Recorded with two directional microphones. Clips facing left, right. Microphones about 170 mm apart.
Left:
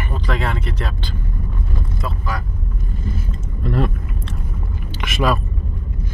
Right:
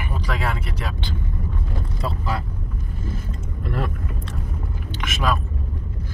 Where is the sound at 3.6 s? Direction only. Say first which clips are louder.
Left 6 dB; 30° left (ahead or behind).